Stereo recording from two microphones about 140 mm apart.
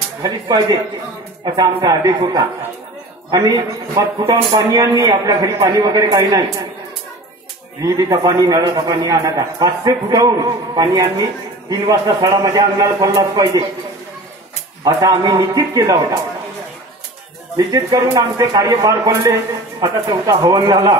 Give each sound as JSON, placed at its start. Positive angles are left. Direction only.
{"t": 0.2, "sound": "a man's voice", "side_deg": -30}
{"t": 7.8, "sound": "a man's voice", "side_deg": -25}
{"t": 14.9, "sound": "a man's voice", "side_deg": -25}
{"t": 17.8, "sound": "a man's voice", "side_deg": -25}